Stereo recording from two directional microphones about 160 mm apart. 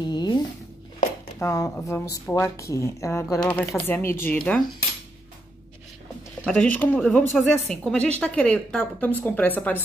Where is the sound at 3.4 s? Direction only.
5° left (ahead or behind).